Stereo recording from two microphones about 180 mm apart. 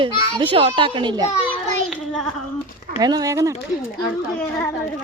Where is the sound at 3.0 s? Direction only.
20° right (ahead or behind).